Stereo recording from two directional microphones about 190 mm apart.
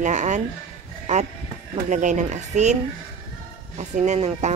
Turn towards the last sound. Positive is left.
turn(degrees=-35)  # may be behind; listen again after turning